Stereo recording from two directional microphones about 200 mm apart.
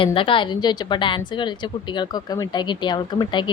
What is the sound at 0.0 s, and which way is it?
A woman's voice, 25° left (ahead or behind).